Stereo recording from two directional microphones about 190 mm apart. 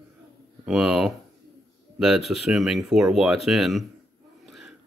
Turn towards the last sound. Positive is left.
turn(degrees=0)  # may be behind; listen again after turning